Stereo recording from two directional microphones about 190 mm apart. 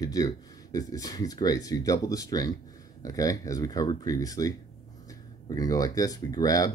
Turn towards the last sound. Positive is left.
turn(degrees=20)  # may be behind; listen again after turning